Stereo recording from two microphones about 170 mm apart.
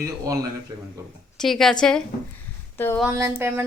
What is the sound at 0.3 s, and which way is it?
Speech, 20° right (ahead or behind).